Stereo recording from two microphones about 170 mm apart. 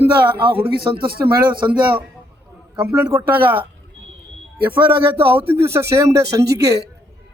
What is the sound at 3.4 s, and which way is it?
Speech, 30° right (ahead or behind).